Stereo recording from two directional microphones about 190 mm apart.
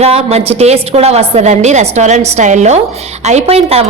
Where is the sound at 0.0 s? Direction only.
30° right (ahead or behind).